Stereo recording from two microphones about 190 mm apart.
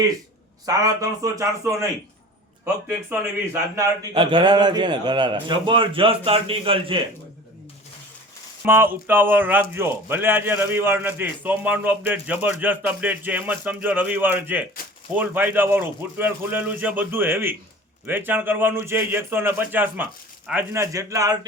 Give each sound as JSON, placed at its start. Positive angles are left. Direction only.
{"t": 0.6, "sound": "speech", "side_deg": -20}
{"t": 3.1, "sound": "speech", "side_deg": -10}
{"t": 4.1, "sound": "a man's voice", "side_deg": -25}
{"t": 8.6, "sound": "speech", "side_deg": -10}